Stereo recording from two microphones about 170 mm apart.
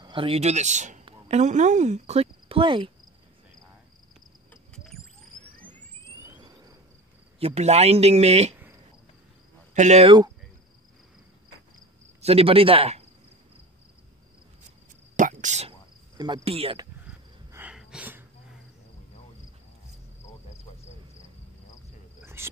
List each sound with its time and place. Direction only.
0.0 s speech: 30° right (ahead or behind)
4.7 s a sound: centre (ahead or behind)
7.3 s speech: 40° right (ahead or behind)
9.8 s speech: 40° right (ahead or behind)
12.2 s speech: 35° right (ahead or behind)
15.1 s cricket: 45° right (ahead or behind)
16.2 s speech: 30° right (ahead or behind)
17.5 s wheeze: 10° right (ahead or behind)
22.2 s cricket: 15° right (ahead or behind)